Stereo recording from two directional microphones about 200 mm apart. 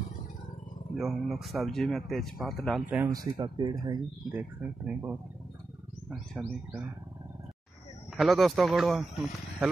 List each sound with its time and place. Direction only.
0.9 s speech: centre (ahead or behind)
3.1 s speech: 20° right (ahead or behind)
4.3 s speech: 10° right (ahead or behind)
8.2 s speech: centre (ahead or behind)